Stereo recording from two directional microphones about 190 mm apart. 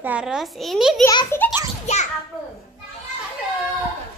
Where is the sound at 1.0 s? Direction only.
15° left (ahead or behind).